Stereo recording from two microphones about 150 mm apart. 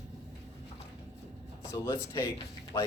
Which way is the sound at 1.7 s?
25° left (ahead or behind).